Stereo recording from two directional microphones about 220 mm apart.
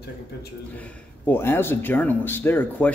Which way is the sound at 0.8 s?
10° left (ahead or behind).